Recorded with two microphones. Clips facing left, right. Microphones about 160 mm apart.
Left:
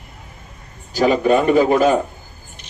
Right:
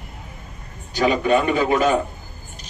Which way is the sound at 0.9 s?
40° left (ahead or behind).